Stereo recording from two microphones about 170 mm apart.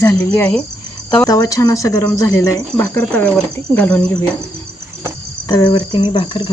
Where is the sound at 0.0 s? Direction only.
15° left (ahead or behind).